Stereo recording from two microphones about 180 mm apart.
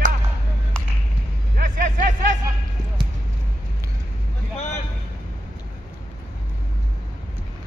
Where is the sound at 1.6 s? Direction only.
45° right (ahead or behind).